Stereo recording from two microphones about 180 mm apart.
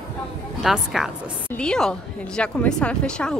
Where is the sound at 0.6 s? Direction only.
Centre (ahead or behind).